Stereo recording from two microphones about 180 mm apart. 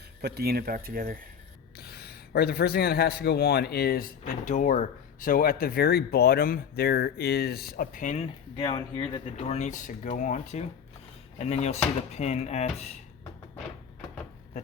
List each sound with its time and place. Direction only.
0.2 s speech: 65° right (ahead or behind)
1.8 s speech: 60° left (ahead or behind)
4.2 s speech: 45° left (ahead or behind)
8.5 s speech: 25° left (ahead or behind)